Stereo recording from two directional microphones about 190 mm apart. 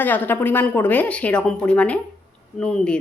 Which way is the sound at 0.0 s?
10° left (ahead or behind).